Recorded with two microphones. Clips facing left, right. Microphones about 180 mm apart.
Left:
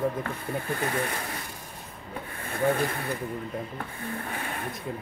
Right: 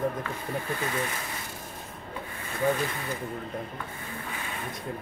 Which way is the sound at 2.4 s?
55° left (ahead or behind).